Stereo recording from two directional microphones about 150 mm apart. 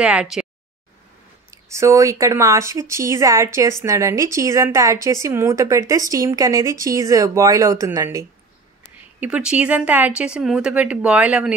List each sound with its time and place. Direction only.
0.0 s a sound: 5° right (ahead or behind)
1.5 s a woman's voice: 20° right (ahead or behind)
9.2 s speech: 5° right (ahead or behind)